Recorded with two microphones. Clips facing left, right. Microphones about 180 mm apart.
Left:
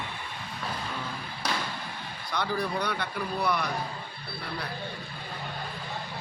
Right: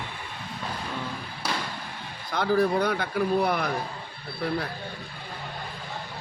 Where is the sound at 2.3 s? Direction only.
50° right (ahead or behind).